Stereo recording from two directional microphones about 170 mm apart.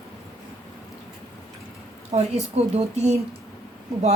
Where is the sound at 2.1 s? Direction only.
40° right (ahead or behind).